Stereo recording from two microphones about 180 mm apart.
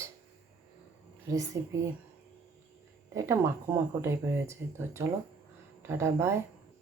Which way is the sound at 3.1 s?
15° right (ahead or behind).